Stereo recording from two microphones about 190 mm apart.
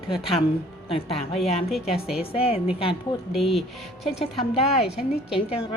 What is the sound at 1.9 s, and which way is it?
Speech, 5° right (ahead or behind).